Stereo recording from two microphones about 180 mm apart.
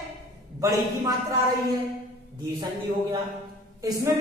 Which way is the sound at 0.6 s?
20° right (ahead or behind).